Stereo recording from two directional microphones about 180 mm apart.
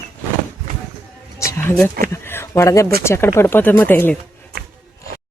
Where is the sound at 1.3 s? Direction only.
15° left (ahead or behind).